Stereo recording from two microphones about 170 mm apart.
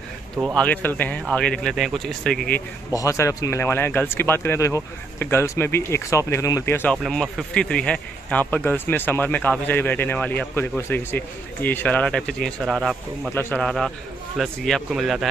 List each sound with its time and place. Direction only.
0.6 s a man's voice: 10° left (ahead or behind)
2.9 s speech: 20° left (ahead or behind)
7.0 s speech: centre (ahead or behind)
13.3 s speech: 15° left (ahead or behind)
13.6 s a man's voice: 5° left (ahead or behind)